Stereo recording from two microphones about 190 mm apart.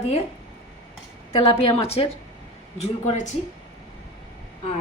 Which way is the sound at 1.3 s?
30° left (ahead or behind).